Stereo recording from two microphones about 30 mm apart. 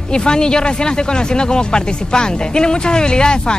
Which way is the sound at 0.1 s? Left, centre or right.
Left.